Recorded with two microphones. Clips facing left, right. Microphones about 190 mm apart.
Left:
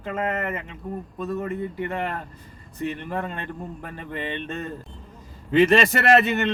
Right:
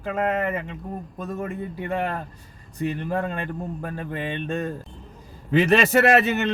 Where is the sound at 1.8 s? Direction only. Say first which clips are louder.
Right 1 dB; 15° right (ahead or behind).